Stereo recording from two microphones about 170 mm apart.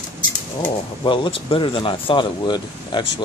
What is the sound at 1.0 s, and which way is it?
Speech, 30° left (ahead or behind).